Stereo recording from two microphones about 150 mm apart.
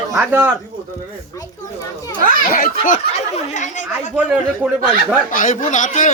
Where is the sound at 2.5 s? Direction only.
70° left (ahead or behind).